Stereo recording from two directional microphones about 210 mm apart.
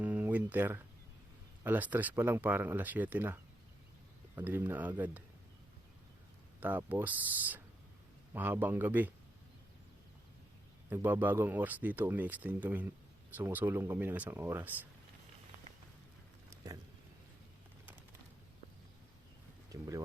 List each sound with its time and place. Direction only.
0.0 s a sound: 10° right (ahead or behind)
1.6 s speech: 10° right (ahead or behind)
6.6 s speech: 10° right (ahead or behind)
10.8 s speech: 10° right (ahead or behind)
19.7 s speech: 15° right (ahead or behind)